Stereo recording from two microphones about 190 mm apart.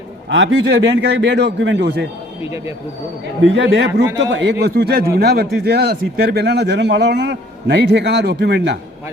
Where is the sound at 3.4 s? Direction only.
75° right (ahead or behind).